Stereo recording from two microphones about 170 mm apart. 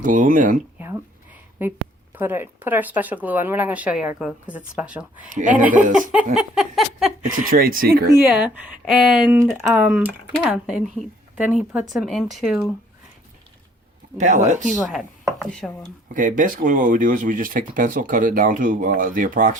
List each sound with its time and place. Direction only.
0.0 s speech: 50° right (ahead or behind)
0.8 s a sound: 10° right (ahead or behind)
2.1 s speech: 10° right (ahead or behind)
5.3 s speech: 50° right (ahead or behind)
6.3 s chopping: 5° right (ahead or behind)
7.3 s speech: 55° right (ahead or behind)
8.3 s speech: 10° right (ahead or behind)
9.9 s chopping: 5° right (ahead or behind)
11.3 s speech: 5° right (ahead or behind)
11.9 s chopping: centre (ahead or behind)
14.2 s speech: 45° right (ahead or behind)
14.8 s chopping: centre (ahead or behind)
16.1 s speech: 50° right (ahead or behind)